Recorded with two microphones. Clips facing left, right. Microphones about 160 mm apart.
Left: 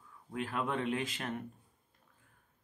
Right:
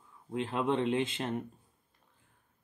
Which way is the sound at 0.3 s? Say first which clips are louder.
Right 5 dB; 25° right (ahead or behind).